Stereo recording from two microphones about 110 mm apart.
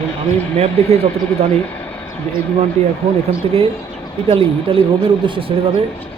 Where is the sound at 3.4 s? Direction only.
55° right (ahead or behind).